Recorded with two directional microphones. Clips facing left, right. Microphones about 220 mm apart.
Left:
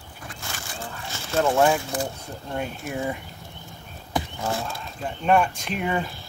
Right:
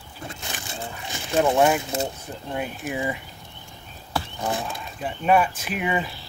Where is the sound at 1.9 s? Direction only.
25° right (ahead or behind).